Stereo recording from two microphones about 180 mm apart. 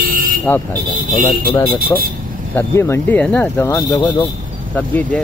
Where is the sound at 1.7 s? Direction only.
55° right (ahead or behind).